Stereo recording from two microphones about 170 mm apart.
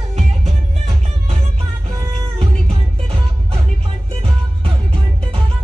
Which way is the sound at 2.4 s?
35° right (ahead or behind).